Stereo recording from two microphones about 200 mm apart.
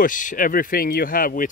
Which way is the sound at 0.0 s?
40° left (ahead or behind).